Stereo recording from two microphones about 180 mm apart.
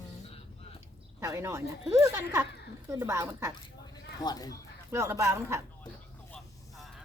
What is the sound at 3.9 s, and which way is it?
Cat, 20° left (ahead or behind).